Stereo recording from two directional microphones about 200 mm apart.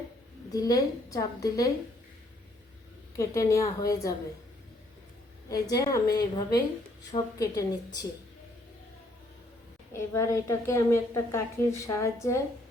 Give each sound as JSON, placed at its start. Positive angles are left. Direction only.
{"t": 0.5, "sound": "a woman's voice", "side_deg": 20}
{"t": 3.2, "sound": "a woman's voice", "side_deg": 15}
{"t": 5.5, "sound": "a woman's voice", "side_deg": 15}
{"t": 10.1, "sound": "a woman's voice", "side_deg": 15}